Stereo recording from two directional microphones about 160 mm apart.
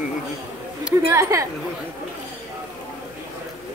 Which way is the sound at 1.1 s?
20° right (ahead or behind).